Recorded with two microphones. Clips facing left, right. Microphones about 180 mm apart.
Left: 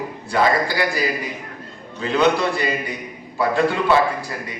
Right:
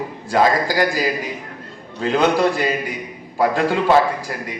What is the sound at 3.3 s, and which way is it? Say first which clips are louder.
Speech: right 1 dB; 40° right (ahead or behind).